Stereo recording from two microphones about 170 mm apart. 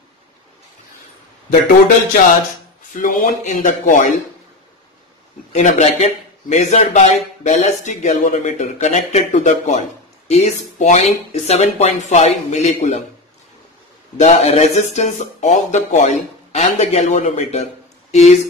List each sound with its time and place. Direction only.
2.9 s a man's voice: 50° left (ahead or behind)
5.5 s a man's voice: 45° left (ahead or behind)
14.1 s a man's voice: 40° left (ahead or behind)